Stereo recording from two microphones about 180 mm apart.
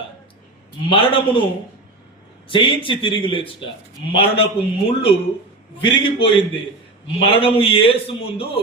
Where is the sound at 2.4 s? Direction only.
30° left (ahead or behind).